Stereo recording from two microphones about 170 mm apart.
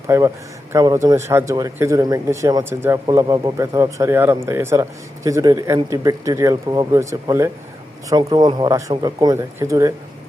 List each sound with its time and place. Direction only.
0.1 s a man's voice: 15° right (ahead or behind)